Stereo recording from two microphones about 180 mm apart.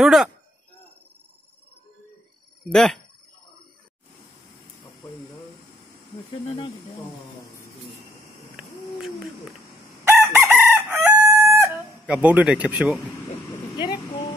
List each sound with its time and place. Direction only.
0.0 s speech: centre (ahead or behind)
2.7 s speech: 5° left (ahead or behind)
6.4 s speech: 35° left (ahead or behind)
8.5 s owl: centre (ahead or behind)
10.0 s chicken: 15° right (ahead or behind)